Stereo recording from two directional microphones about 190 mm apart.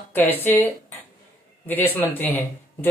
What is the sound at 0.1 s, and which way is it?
Speech, 10° left (ahead or behind).